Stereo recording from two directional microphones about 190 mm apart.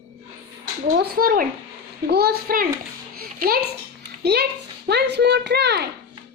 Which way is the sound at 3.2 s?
50° right (ahead or behind).